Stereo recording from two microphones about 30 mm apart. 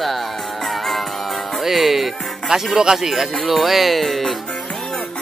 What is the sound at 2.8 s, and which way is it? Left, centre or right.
Speech, centre.